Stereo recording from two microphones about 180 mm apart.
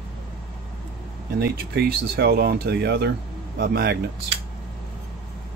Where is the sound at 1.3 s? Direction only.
65° right (ahead or behind).